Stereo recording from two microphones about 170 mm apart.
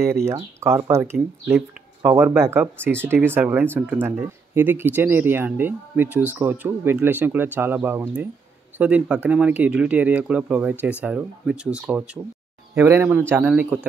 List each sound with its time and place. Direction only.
0.2 s speech: 15° right (ahead or behind)